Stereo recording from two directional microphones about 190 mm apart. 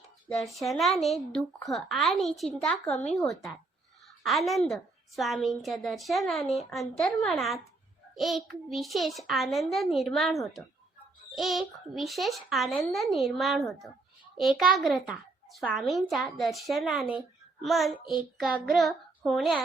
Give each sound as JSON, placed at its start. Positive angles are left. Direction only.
{"t": 0.3, "sound": "a child's voice", "side_deg": 0}
{"t": 4.2, "sound": "a child's voice", "side_deg": 0}
{"t": 18.0, "sound": "child singing", "side_deg": 25}
{"t": 18.7, "sound": "child singing", "side_deg": 0}